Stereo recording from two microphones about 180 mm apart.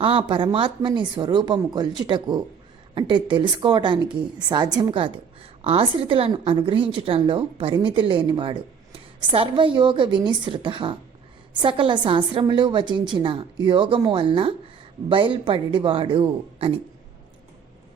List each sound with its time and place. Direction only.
0.0 s a woman's voice: 30° right (ahead or behind)